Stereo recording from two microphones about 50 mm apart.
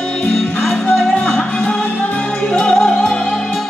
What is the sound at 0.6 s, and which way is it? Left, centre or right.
Music, centre.